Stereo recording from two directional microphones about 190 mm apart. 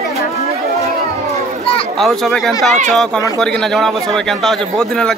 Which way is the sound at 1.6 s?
30° left (ahead or behind).